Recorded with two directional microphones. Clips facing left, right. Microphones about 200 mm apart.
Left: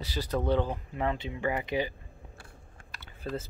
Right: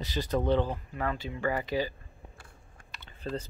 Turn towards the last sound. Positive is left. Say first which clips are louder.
# even
turn(degrees=10)  # may be behind; listen again after turning